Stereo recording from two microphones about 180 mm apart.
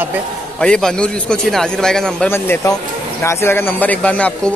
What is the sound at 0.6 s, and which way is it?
Speech, 5° left (ahead or behind).